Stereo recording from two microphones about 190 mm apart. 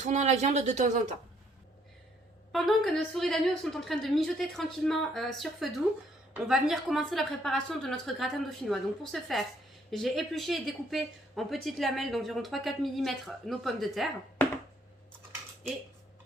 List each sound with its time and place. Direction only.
0.0 s speech: 40° right (ahead or behind)
2.5 s speech: centre (ahead or behind)